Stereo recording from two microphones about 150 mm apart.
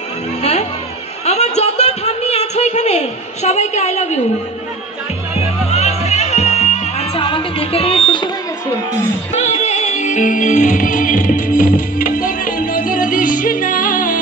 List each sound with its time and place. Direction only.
0.4 s music: 45° left (ahead or behind)
1.2 s a sound: 45° left (ahead or behind)
5.7 s music: 45° left (ahead or behind)
9.3 s music: 45° left (ahead or behind); by 14.2 s 65° left (ahead or behind)